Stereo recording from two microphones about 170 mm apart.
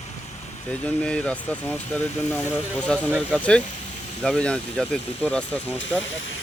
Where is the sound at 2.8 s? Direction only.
5° left (ahead or behind).